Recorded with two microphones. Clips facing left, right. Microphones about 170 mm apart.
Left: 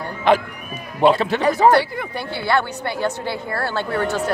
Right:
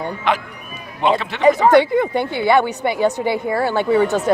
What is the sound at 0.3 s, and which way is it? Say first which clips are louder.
Speech: left 4 dB; 30° left (ahead or behind).